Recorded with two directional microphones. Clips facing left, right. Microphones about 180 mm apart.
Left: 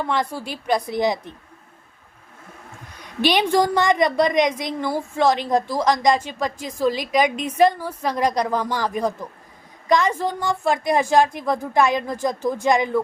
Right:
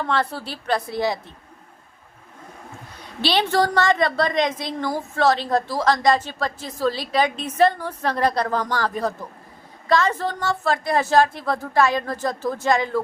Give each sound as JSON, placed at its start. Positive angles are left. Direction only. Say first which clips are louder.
{"t": 0.0, "sound": "a woman's voice", "louder": "even", "side_deg": 15}
{"t": 3.0, "sound": "a woman's voice", "louder": "left 2 dB", "side_deg": 15}